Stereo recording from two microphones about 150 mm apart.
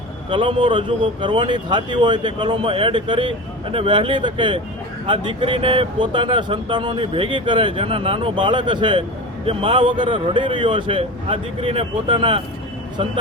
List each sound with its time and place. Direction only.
0.3 s speech: 35° right (ahead or behind)